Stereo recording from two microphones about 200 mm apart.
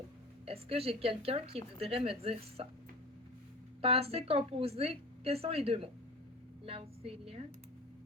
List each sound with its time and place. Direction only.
0.4 s a woman's voice: 30° right (ahead or behind)
3.8 s a woman's voice: 30° right (ahead or behind)